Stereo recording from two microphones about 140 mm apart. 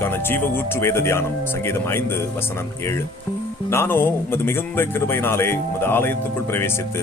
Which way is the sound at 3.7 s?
15° left (ahead or behind).